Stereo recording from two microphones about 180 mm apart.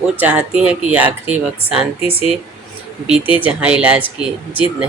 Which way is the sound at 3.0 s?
5° right (ahead or behind).